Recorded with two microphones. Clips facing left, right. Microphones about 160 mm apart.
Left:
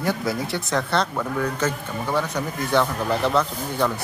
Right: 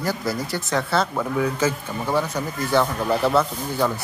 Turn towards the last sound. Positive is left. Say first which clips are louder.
# right 1 dB
turn(degrees=-5)  # may be behind; listen again after turning